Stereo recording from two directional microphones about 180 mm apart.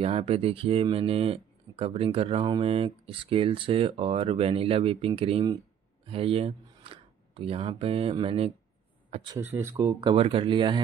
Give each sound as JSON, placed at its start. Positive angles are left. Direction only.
{"t": 0.0, "sound": "speech", "side_deg": -35}
{"t": 9.4, "sound": "speech", "side_deg": -10}
{"t": 10.1, "sound": "speech", "side_deg": -30}